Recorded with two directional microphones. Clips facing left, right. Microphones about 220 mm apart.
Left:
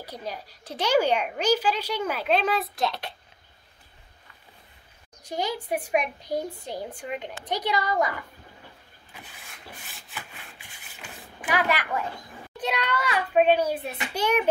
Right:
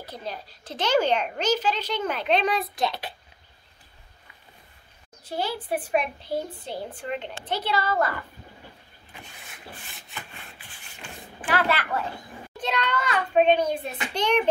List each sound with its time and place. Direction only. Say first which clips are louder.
0.0 s speech: even; 10° left (ahead or behind)
5.2 s speech: even; 15° left (ahead or behind)
9.2 s rub: right 2 dB; centre (ahead or behind)
12.5 s speech: even; 10° left (ahead or behind)